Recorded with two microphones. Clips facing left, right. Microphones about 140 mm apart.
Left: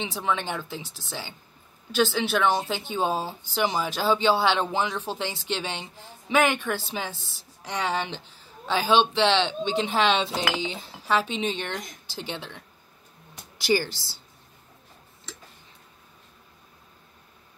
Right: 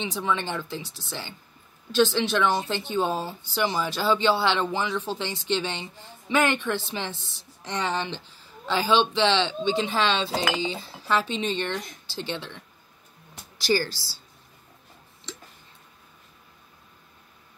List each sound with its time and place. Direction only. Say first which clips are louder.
0.0 s speech: even; 15° left (ahead or behind)
13.7 s a woman's voice: even; 20° left (ahead or behind)